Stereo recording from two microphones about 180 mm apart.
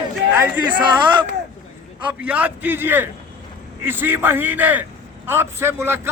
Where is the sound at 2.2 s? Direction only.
10° right (ahead or behind).